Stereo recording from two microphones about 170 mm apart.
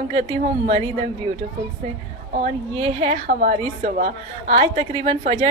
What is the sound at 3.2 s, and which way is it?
A woman's voice, 55° right (ahead or behind).